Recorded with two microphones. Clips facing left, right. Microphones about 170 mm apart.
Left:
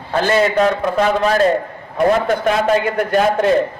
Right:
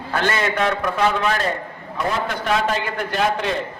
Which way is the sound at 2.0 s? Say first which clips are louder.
Left 9 dB; 50° left (ahead or behind).